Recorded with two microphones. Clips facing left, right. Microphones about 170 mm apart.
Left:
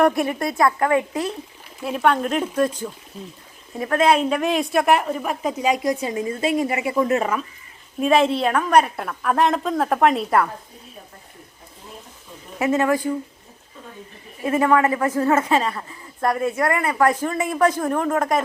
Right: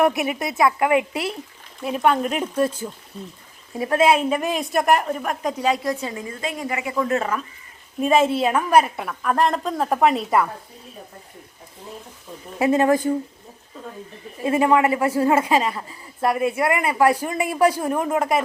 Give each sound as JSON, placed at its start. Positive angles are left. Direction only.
{"t": 0.0, "sound": "speech", "side_deg": -5}
{"t": 1.8, "sound": "a woman's voice", "side_deg": 0}
{"t": 3.1, "sound": "a woman's voice", "side_deg": 5}
{"t": 3.8, "sound": "speech", "side_deg": -20}
{"t": 4.0, "sound": "a woman's voice", "side_deg": -5}
{"t": 7.2, "sound": "a woman's voice", "side_deg": 10}
{"t": 8.0, "sound": "a woman's voice", "side_deg": 0}
{"t": 12.5, "sound": "speech", "side_deg": -30}
{"t": 14.4, "sound": "speech", "side_deg": -20}